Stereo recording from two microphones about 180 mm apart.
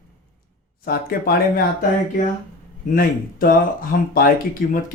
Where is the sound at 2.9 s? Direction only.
50° left (ahead or behind).